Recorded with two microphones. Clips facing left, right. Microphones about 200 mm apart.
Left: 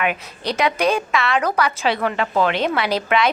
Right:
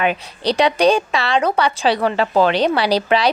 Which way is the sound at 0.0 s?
30° right (ahead or behind).